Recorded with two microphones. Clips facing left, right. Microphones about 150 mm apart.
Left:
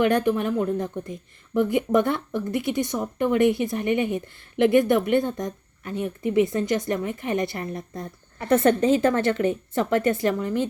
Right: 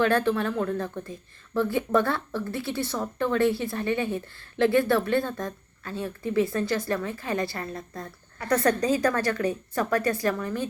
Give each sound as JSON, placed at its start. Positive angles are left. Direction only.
{"t": 0.0, "sound": "speech", "side_deg": 15}